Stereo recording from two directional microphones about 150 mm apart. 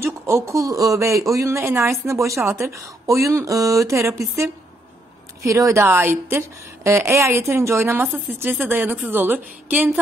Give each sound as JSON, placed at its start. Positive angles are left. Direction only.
{"t": 0.0, "sound": "a woman's voice", "side_deg": -20}